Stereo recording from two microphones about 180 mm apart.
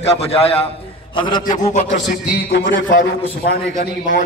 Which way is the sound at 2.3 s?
55° left (ahead or behind).